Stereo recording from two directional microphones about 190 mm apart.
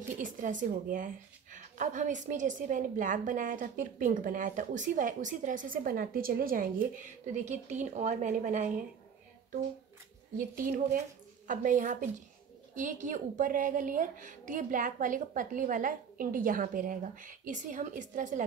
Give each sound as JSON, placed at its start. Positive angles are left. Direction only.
{"t": 0.2, "sound": "a woman's voice", "side_deg": -40}
{"t": 7.4, "sound": "speech", "side_deg": -40}
{"t": 10.3, "sound": "a woman's voice", "side_deg": -45}